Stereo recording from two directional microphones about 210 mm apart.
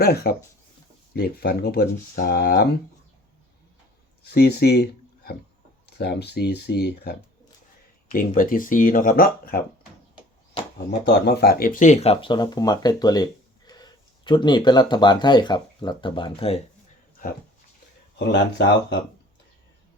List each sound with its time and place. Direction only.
0.0 s speech: 45° left (ahead or behind)
4.2 s speech: 50° left (ahead or behind)
10.8 s speech: 50° left (ahead or behind); by 16.6 s 25° left (ahead or behind)
18.2 s speech: 55° left (ahead or behind)